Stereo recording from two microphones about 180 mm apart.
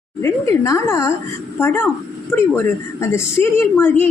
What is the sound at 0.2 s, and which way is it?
A woman's voice, 15° left (ahead or behind).